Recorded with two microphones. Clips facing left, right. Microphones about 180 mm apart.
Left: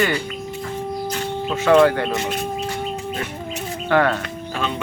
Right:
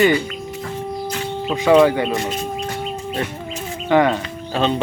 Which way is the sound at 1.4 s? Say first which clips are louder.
Right 1 dB; 10° right (ahead or behind).